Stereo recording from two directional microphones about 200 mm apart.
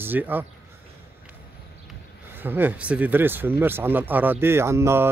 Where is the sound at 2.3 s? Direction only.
10° right (ahead or behind).